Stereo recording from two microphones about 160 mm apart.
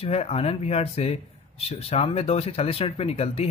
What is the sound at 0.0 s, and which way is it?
Speech, 40° left (ahead or behind).